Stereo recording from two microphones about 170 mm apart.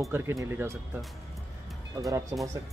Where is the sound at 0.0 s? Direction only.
15° right (ahead or behind).